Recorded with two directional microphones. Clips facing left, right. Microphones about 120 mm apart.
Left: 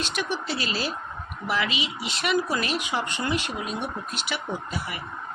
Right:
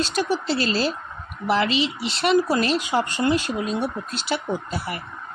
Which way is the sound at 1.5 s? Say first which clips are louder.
Right 7 dB; 35° right (ahead or behind).